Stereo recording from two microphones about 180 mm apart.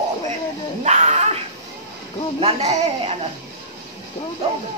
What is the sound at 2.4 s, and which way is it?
Speech, 35° right (ahead or behind).